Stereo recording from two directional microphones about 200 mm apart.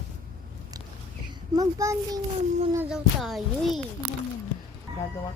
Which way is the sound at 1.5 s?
15° right (ahead or behind).